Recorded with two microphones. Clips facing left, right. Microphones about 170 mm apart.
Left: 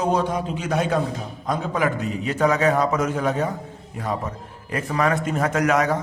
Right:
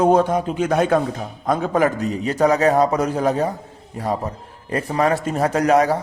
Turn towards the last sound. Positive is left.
turn(degrees=-35)  # may be behind; listen again after turning